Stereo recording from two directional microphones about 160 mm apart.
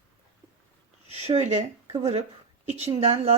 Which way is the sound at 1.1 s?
40° right (ahead or behind).